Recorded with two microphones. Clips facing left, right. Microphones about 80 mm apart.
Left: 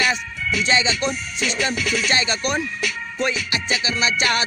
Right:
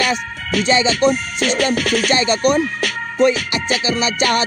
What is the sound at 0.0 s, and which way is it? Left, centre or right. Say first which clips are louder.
Music: right 2 dB; right.